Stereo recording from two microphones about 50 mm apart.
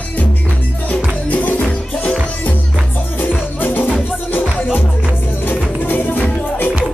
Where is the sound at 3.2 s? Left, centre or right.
Left.